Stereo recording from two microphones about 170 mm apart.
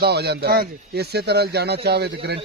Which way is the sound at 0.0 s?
75° right (ahead or behind).